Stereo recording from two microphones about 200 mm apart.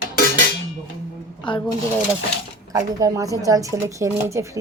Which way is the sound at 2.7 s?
15° right (ahead or behind).